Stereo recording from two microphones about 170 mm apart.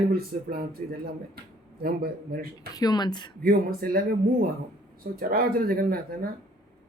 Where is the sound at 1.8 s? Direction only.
60° right (ahead or behind).